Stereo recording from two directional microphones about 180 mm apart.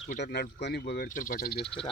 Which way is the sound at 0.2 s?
60° left (ahead or behind).